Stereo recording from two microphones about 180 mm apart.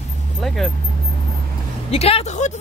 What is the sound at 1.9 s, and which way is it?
Speech, 35° left (ahead or behind).